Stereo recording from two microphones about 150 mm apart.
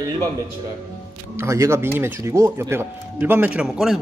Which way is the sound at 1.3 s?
20° right (ahead or behind).